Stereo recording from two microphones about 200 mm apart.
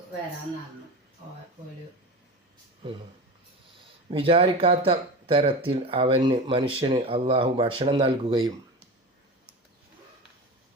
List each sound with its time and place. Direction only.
4.1 s speech: 25° right (ahead or behind)